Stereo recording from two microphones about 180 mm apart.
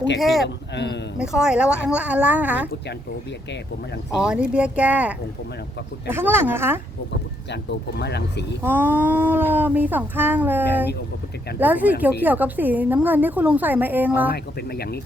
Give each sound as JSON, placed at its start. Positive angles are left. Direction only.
{"t": 0.2, "sound": "speech", "side_deg": 0}
{"t": 0.4, "sound": "speech", "side_deg": 75}
{"t": 1.2, "sound": "speech", "side_deg": -5}
{"t": 4.2, "sound": "speech", "side_deg": -5}
{"t": 7.5, "sound": "speech", "side_deg": 70}
{"t": 8.6, "sound": "speech", "side_deg": -10}
{"t": 14.3, "sound": "speech", "side_deg": 60}